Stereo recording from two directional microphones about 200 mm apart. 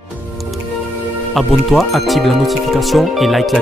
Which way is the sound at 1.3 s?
Centre (ahead or behind).